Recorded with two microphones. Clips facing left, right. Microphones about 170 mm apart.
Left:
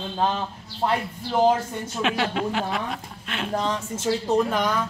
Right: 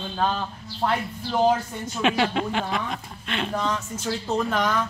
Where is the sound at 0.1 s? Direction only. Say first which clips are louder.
Left 1 dB; 20° left (ahead or behind).